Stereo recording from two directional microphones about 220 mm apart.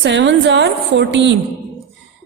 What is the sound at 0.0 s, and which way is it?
A woman's voice, 55° right (ahead or behind).